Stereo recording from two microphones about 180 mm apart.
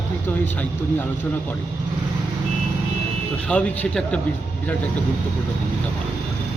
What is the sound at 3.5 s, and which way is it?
Speech, 5° left (ahead or behind).